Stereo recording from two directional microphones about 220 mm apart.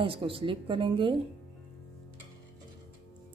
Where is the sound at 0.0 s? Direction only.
25° right (ahead or behind).